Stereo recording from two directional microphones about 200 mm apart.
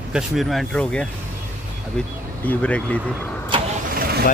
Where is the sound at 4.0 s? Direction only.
50° right (ahead or behind).